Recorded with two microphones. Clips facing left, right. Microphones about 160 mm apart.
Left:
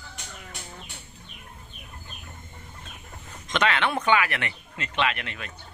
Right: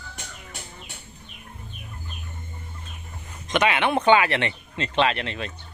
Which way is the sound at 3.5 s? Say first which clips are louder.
Right 3 dB; 15° right (ahead or behind).